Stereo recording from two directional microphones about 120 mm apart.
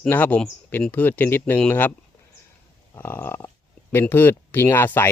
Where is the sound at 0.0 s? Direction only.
15° left (ahead or behind).